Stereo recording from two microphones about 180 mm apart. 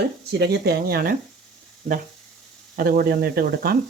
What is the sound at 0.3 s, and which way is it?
Speech, 60° right (ahead or behind).